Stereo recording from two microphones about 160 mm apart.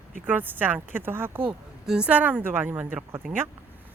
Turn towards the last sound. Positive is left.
turn(degrees=-10)  # may be behind; listen again after turning